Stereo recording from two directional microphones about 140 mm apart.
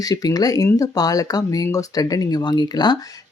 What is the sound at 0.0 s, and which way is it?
Speech, 25° left (ahead or behind).